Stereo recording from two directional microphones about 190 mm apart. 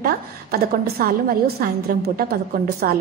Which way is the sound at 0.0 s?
50° right (ahead or behind).